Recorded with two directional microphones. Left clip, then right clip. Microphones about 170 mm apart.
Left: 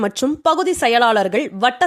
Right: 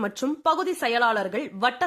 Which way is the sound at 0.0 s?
35° left (ahead or behind).